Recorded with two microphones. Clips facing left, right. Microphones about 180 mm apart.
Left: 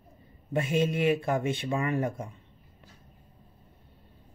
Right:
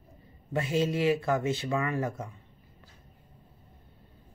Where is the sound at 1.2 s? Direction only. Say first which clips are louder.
Even; 25° left (ahead or behind).